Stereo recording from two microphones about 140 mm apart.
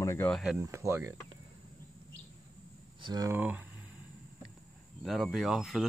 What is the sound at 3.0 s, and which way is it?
Speech, 30° right (ahead or behind).